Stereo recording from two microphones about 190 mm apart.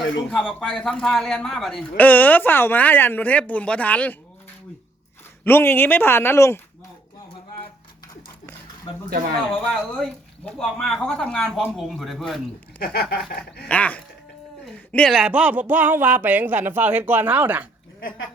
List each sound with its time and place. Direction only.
0.3 s a man's voice: centre (ahead or behind)
5.4 s a man's voice: 10° left (ahead or behind)
9.0 s speech: 55° right (ahead or behind)
9.5 s speech: 5° left (ahead or behind)
12.8 s a sound: 55° left (ahead or behind)
13.7 s a man's voice: 5° left (ahead or behind); by 17.7 s 10° right (ahead or behind)